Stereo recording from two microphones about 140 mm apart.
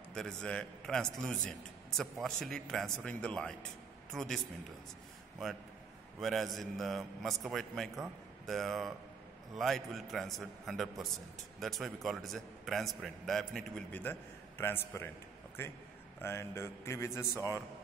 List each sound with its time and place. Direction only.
0.1 s a man's voice: 5° left (ahead or behind)
6.1 s a man's voice: centre (ahead or behind)
14.6 s a man's voice: 15° left (ahead or behind)